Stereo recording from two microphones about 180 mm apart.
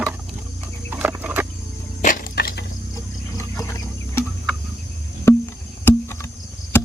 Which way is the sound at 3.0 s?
15° left (ahead or behind).